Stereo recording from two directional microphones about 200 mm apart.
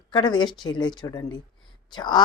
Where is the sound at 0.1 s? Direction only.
25° left (ahead or behind).